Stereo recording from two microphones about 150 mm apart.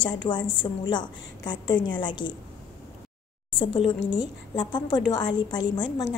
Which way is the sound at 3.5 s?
35° left (ahead or behind).